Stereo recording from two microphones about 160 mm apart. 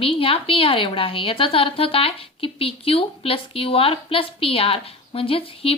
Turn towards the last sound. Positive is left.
turn(degrees=35)  # may be behind; listen again after turning